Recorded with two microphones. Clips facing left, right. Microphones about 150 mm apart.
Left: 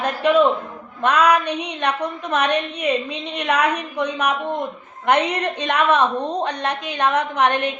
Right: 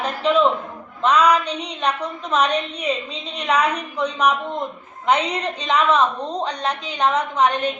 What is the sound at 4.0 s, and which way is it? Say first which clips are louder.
A woman's voice: right 3 dB; 60° left (ahead or behind).